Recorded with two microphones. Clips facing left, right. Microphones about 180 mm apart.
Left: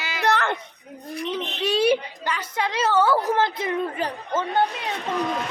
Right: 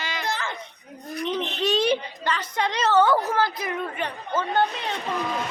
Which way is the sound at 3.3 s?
25° left (ahead or behind).